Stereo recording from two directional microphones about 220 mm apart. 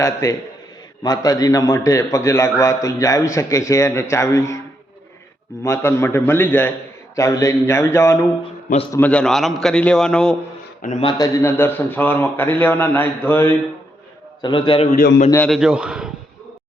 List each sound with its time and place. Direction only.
0.0 s a man's voice: 15° left (ahead or behind)
5.6 s a man's voice: 10° left (ahead or behind)
11.0 s a man's voice: 15° left (ahead or behind)
14.4 s a man's voice: 20° left (ahead or behind)
14.9 s a man's voice: 40° left (ahead or behind)
15.3 s a man's voice: 5° left (ahead or behind)